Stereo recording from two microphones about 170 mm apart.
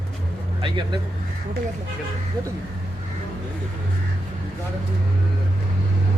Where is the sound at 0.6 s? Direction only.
25° right (ahead or behind).